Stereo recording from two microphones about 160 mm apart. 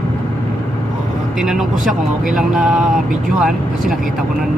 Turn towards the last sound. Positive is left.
turn(degrees=0)  # may be behind; listen again after turning